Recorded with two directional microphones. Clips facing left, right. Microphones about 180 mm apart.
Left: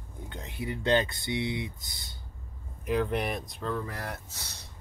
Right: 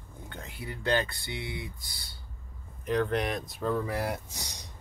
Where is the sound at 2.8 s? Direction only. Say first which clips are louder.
Even; 5° left (ahead or behind).